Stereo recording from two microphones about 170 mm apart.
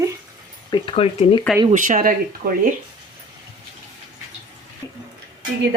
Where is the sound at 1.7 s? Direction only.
50° right (ahead or behind).